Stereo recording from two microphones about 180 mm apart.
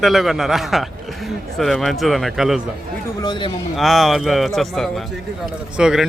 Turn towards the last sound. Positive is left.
turn(degrees=-5)  # may be behind; listen again after turning